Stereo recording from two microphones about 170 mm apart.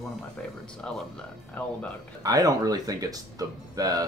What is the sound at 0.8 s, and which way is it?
Speech, 10° left (ahead or behind).